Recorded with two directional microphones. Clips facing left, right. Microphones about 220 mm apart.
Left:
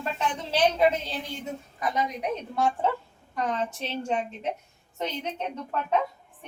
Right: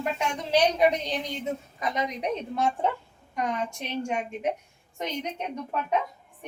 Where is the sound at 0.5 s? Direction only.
15° right (ahead or behind).